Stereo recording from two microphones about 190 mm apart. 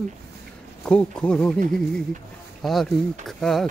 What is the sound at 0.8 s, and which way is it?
Speech, 5° left (ahead or behind).